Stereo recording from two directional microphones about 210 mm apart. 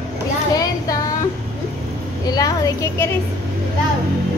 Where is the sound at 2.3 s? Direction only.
15° left (ahead or behind).